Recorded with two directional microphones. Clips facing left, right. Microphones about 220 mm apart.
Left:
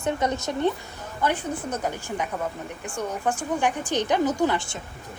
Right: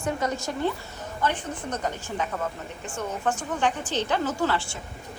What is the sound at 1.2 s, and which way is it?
A woman's voice, 10° left (ahead or behind).